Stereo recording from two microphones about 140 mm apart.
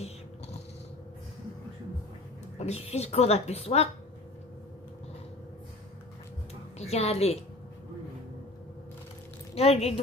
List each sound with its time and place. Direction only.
2.6 s speech: 50° left (ahead or behind)
6.8 s speech: 50° left (ahead or behind)
9.6 s speech: 45° left (ahead or behind)